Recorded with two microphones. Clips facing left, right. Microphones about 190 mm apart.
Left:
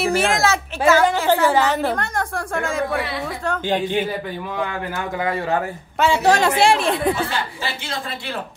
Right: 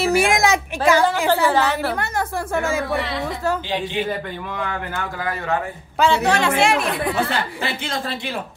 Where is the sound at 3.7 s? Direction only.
50° left (ahead or behind).